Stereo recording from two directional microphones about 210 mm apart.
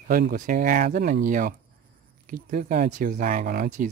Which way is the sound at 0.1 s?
45° right (ahead or behind).